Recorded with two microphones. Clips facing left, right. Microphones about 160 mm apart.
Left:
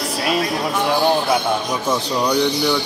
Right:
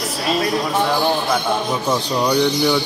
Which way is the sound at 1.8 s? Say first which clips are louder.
Even; 5° right (ahead or behind).